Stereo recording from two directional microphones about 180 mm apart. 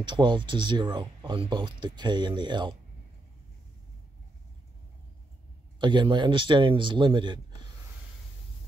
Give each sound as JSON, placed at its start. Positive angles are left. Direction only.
{"t": 0.0, "sound": "speech", "side_deg": -25}
{"t": 5.8, "sound": "speech", "side_deg": -25}